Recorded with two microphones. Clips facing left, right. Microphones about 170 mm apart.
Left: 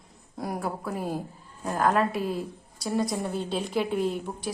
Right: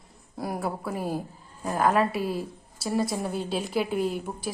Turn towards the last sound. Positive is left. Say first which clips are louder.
# even
turn(degrees=-5)  # may be behind; listen again after turning